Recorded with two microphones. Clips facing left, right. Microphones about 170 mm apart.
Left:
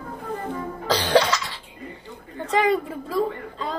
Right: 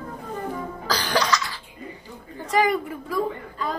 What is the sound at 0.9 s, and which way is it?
Cough, 25° left (ahead or behind).